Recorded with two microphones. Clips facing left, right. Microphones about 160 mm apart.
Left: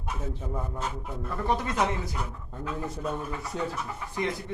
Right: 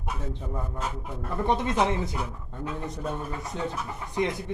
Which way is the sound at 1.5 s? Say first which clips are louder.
Right 3 dB; 20° right (ahead or behind).